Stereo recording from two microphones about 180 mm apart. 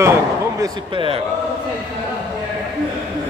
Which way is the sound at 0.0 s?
15° right (ahead or behind).